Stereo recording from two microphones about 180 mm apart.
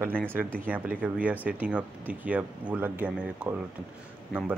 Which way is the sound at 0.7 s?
10° right (ahead or behind).